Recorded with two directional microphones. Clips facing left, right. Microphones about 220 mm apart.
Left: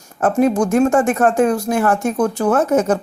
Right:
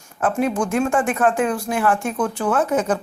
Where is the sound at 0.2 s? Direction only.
40° left (ahead or behind).